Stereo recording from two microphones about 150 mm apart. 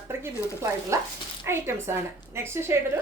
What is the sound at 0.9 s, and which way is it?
A woman's voice, 20° right (ahead or behind).